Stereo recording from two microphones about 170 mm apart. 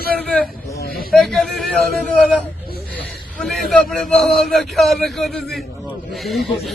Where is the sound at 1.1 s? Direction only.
Centre (ahead or behind).